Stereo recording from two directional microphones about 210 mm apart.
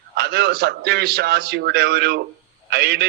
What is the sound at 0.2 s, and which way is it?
A man's voice, 50° right (ahead or behind).